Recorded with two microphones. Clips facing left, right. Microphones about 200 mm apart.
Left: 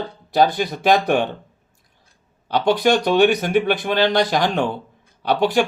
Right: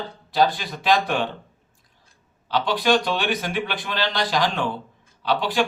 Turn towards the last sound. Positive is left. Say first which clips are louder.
# left 5 dB
turn(degrees=50)  # may be behind; listen again after turning